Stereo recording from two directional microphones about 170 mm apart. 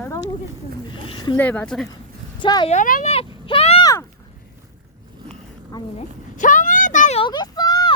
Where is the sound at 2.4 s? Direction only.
25° left (ahead or behind).